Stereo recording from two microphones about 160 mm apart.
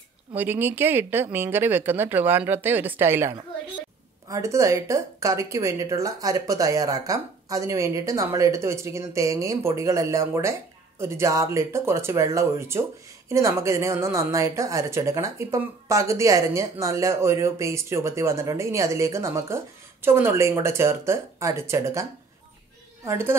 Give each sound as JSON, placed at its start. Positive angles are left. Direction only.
{"t": 0.4, "sound": "a woman's voice", "side_deg": -10}
{"t": 23.0, "sound": "speech", "side_deg": -15}